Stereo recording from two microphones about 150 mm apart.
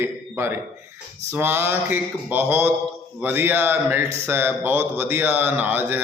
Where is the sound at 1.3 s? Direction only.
15° right (ahead or behind).